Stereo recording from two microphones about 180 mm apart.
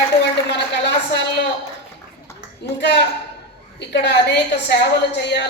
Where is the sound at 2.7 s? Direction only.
70° left (ahead or behind).